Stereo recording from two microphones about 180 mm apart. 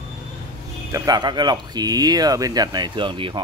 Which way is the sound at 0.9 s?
20° right (ahead or behind).